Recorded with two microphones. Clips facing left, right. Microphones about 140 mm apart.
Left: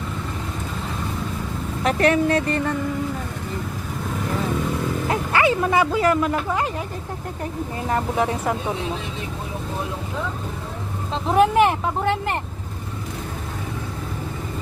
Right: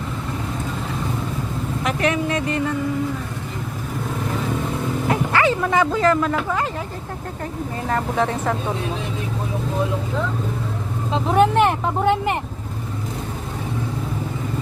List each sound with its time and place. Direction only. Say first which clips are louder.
1.8 s speech: left 4 dB; 35° left (ahead or behind)
5.3 s speech: left 2 dB; 15° left (ahead or behind)
7.9 s speech: right 1 dB; 15° left (ahead or behind)
11.1 s speech: right 1 dB; centre (ahead or behind)